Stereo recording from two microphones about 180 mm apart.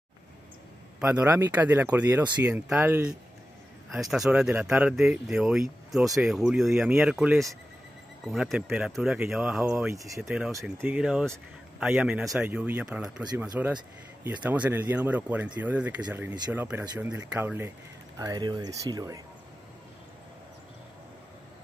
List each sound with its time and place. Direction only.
1.0 s speech: 10° right (ahead or behind)
9.9 s speech: 20° right (ahead or behind)
10.2 s speech: 5° right (ahead or behind); by 19.2 s 20° right (ahead or behind)